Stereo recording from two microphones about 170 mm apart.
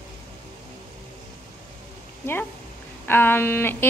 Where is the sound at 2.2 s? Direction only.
15° left (ahead or behind).